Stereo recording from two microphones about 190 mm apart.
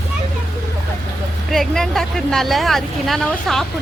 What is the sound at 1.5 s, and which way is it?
Speech, centre (ahead or behind).